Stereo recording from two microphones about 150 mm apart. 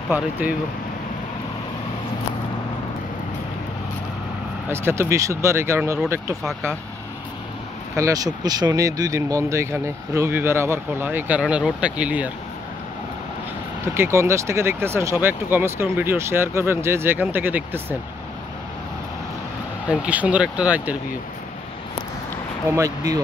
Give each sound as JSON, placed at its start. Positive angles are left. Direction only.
{"t": 0.1, "sound": "speech", "side_deg": -10}
{"t": 4.6, "sound": "speech", "side_deg": -15}
{"t": 7.9, "sound": "speech", "side_deg": -20}
{"t": 13.9, "sound": "speech", "side_deg": -15}
{"t": 19.9, "sound": "speech", "side_deg": -10}
{"t": 22.7, "sound": "speech", "side_deg": -20}